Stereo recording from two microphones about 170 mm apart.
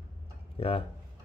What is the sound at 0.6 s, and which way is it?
Speech, 35° left (ahead or behind).